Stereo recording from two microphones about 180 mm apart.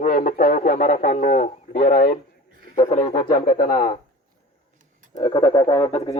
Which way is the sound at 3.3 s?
55° left (ahead or behind).